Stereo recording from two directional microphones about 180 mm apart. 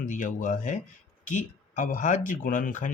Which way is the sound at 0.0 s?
45° left (ahead or behind).